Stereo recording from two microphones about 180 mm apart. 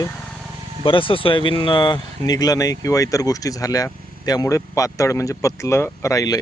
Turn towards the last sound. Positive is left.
turn(degrees=20)  # may be behind; listen again after turning